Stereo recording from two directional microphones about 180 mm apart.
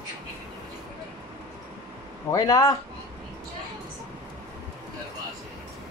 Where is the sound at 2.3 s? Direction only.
20° left (ahead or behind).